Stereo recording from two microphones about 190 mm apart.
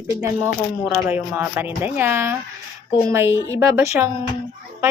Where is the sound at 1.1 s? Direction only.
10° right (ahead or behind).